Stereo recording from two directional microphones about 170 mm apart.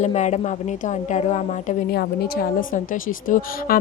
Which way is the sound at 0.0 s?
45° left (ahead or behind).